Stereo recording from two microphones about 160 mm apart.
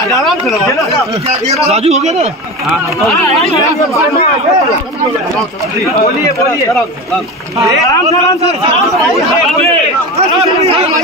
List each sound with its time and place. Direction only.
1.5 s a man's voice: 40° right (ahead or behind)